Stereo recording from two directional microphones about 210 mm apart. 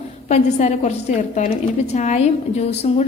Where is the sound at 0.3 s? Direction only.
30° left (ahead or behind).